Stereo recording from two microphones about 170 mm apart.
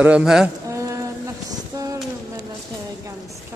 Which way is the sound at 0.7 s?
20° right (ahead or behind).